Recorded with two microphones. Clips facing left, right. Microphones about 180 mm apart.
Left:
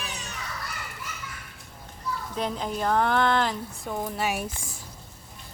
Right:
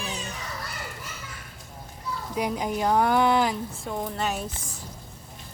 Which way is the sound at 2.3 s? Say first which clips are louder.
Right 3 dB; 10° right (ahead or behind).